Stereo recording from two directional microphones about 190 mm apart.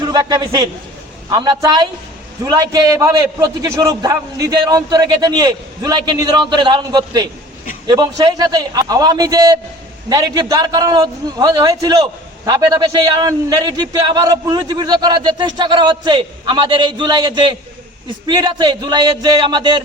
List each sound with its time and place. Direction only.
0.0 s a man's voice: 20° right (ahead or behind)